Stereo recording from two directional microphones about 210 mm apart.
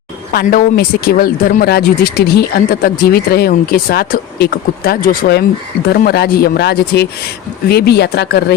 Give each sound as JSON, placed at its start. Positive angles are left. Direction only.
{"t": 0.3, "sound": "speech", "side_deg": 45}